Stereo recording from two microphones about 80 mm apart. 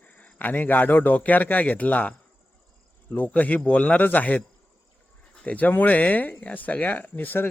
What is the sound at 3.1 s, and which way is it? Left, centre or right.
Speech, centre.